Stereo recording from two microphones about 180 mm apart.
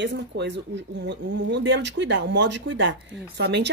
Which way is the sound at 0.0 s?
70° right (ahead or behind).